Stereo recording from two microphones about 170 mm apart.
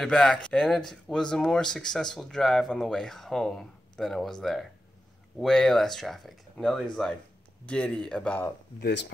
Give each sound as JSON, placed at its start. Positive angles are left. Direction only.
{"t": 0.0, "sound": "speech", "side_deg": 5}
{"t": 8.7, "sound": "speech", "side_deg": 80}